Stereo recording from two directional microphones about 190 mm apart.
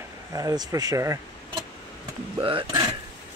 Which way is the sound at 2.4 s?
25° right (ahead or behind).